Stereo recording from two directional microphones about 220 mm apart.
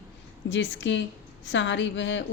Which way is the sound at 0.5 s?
55° left (ahead or behind).